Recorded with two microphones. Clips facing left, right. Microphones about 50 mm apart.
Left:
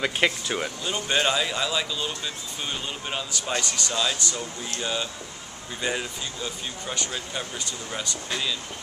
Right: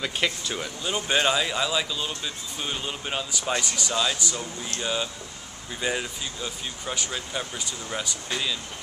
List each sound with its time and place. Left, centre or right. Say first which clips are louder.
0.0 s speech: left 3 dB; centre
0.8 s speech: right 2 dB; centre